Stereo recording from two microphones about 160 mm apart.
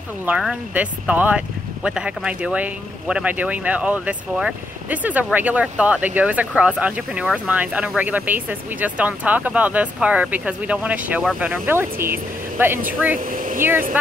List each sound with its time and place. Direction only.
0.2 s speech: 5° right (ahead or behind)
13.2 s a sound: 60° right (ahead or behind)
13.6 s speech: 15° right (ahead or behind)